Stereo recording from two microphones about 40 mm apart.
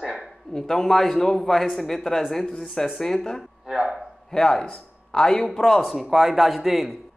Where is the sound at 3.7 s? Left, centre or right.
Centre.